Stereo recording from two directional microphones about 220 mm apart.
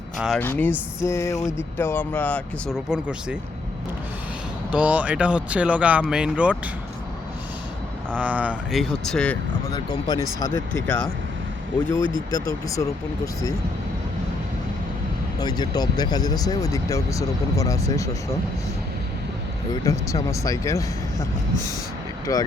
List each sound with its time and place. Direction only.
0.2 s speech: centre (ahead or behind)
4.7 s speech: 5° right (ahead or behind)
8.1 s speech: 5° right (ahead or behind)
9.7 s speech: 20° left (ahead or behind)
12.3 s speech: 15° left (ahead or behind)
15.4 s speech: 20° left (ahead or behind)
19.7 s speech: 15° left (ahead or behind)
22.3 s speech: 15° left (ahead or behind)